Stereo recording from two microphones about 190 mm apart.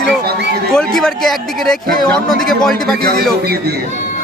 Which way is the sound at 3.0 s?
55° right (ahead or behind).